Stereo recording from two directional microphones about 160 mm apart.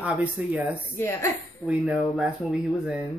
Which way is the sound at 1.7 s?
5° right (ahead or behind).